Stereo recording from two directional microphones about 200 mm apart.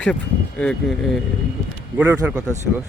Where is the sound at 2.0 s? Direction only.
5° right (ahead or behind).